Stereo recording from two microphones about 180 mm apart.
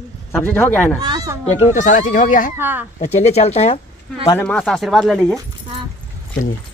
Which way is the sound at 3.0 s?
40° left (ahead or behind).